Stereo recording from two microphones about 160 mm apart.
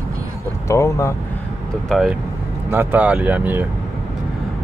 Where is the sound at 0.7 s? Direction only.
20° left (ahead or behind).